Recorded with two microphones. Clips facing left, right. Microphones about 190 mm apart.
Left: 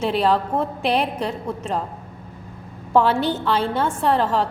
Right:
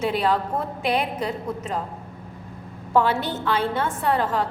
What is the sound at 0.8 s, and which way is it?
Speech, 30° left (ahead or behind).